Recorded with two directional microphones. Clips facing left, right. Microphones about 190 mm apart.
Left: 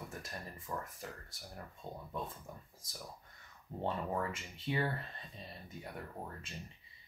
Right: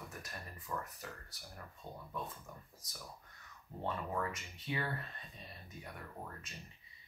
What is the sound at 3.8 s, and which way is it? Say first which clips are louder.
Speech: left 2 dB; 30° left (ahead or behind).